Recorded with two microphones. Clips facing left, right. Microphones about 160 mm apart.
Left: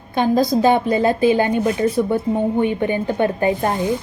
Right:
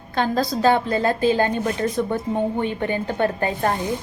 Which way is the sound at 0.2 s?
15° left (ahead or behind).